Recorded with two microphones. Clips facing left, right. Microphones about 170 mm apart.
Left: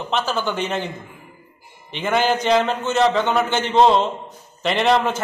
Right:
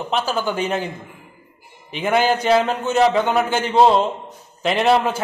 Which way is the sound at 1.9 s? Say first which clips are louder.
Right 2 dB; 5° right (ahead or behind).